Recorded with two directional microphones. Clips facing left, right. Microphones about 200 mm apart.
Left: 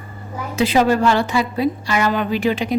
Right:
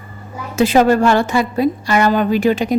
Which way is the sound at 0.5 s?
45° right (ahead or behind).